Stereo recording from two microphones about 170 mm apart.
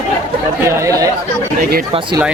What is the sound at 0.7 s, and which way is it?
Speech, 15° right (ahead or behind).